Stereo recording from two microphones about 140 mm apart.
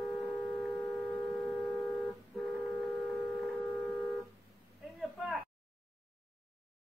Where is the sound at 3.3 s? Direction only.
10° left (ahead or behind).